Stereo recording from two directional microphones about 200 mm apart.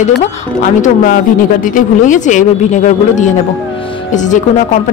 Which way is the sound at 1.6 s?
40° left (ahead or behind).